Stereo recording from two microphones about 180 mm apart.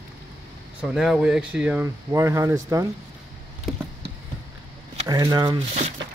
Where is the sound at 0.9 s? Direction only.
5° right (ahead or behind).